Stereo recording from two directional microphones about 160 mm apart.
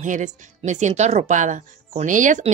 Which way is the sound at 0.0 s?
50° right (ahead or behind).